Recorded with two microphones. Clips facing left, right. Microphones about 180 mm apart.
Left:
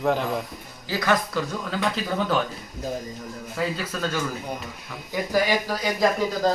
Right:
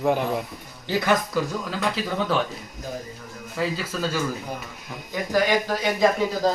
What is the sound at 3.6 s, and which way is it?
Speech, centre (ahead or behind).